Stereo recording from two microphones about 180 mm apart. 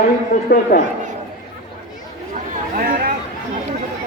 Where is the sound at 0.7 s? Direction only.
55° left (ahead or behind).